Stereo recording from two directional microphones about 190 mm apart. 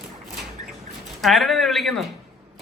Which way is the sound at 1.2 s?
Centre (ahead or behind).